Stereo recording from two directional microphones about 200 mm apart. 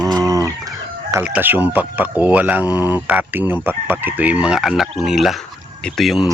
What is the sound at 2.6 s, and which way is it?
Speech, 15° left (ahead or behind).